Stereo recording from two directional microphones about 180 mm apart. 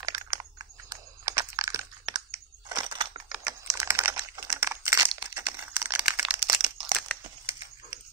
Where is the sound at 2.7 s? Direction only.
20° right (ahead or behind).